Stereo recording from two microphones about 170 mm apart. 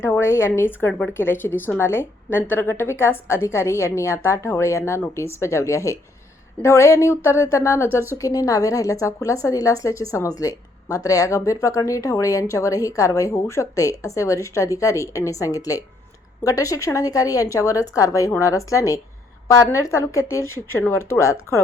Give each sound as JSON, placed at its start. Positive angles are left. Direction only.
{"t": 0.0, "sound": "a woman's voice", "side_deg": 15}